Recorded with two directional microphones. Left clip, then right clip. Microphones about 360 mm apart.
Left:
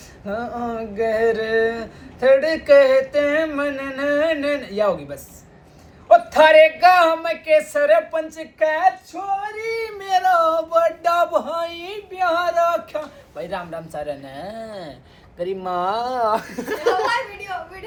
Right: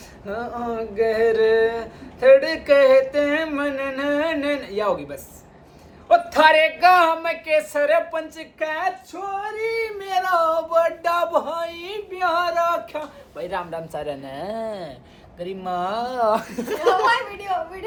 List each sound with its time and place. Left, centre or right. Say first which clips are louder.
0.3 s speech: left 1 dB; centre
15.4 s speech: left 3 dB; centre